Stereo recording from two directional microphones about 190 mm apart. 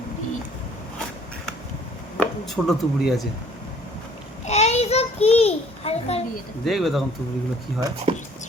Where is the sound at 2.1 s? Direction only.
Centre (ahead or behind).